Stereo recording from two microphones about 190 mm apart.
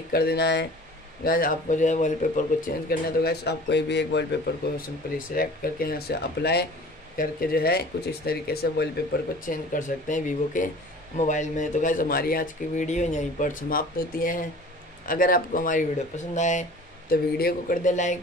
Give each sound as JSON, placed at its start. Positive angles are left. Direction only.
{"t": 0.1, "sound": "speech", "side_deg": 55}
{"t": 1.2, "sound": "speech", "side_deg": 50}
{"t": 5.3, "sound": "speech", "side_deg": 50}
{"t": 17.1, "sound": "speech", "side_deg": 50}